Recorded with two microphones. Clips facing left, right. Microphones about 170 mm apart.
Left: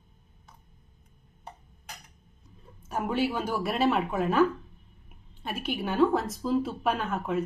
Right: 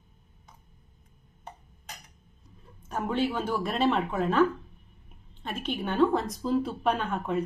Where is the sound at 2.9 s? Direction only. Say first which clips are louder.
Even; 10° left (ahead or behind).